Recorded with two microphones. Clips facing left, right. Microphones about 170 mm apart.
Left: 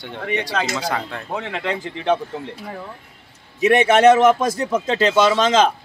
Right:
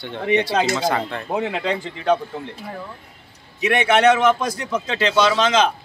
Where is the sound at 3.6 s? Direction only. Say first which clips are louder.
Left 3 dB; 45° left (ahead or behind).